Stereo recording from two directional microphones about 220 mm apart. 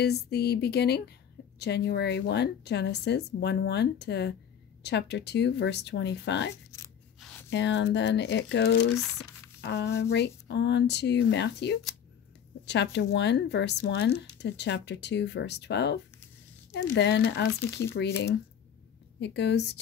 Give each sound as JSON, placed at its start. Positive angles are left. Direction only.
{"t": 0.0, "sound": "a woman's voice", "side_deg": 45}
{"t": 6.5, "sound": "scissors", "side_deg": 15}
{"t": 7.4, "sound": "a woman's voice", "side_deg": 55}
{"t": 9.6, "sound": "a sound", "side_deg": 50}
{"t": 10.1, "sound": "a woman's voice", "side_deg": 50}
{"t": 19.1, "sound": "a woman's voice", "side_deg": 50}